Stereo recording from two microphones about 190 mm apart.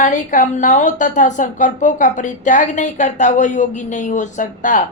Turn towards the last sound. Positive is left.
turn(degrees=45)  # may be behind; listen again after turning